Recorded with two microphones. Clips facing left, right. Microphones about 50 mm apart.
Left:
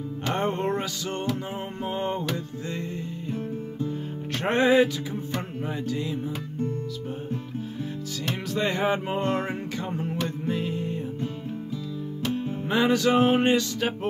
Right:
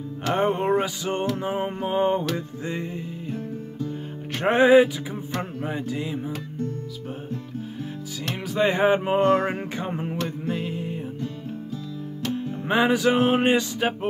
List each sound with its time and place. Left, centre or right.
0.3 s music: centre
4.4 s music: centre
8.5 s music: right
9.2 s music: right
9.8 s music: right
10.5 s music: centre
12.6 s music: right
13.4 s music: right